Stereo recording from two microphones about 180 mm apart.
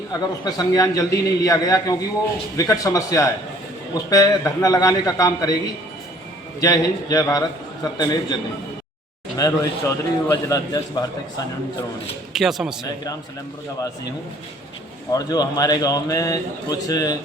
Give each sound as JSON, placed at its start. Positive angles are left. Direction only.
{"t": 0.1, "sound": "a man's voice", "side_deg": 20}
{"t": 6.6, "sound": "a man's voice", "side_deg": 20}
{"t": 9.4, "sound": "a man's voice", "side_deg": 15}
{"t": 12.3, "sound": "a man's voice", "side_deg": 0}
{"t": 15.1, "sound": "a man's voice", "side_deg": 20}